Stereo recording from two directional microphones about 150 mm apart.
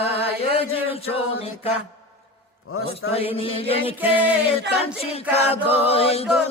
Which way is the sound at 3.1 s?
40° left (ahead or behind).